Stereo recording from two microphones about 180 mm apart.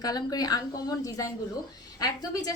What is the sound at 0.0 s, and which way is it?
A woman's voice, 20° left (ahead or behind).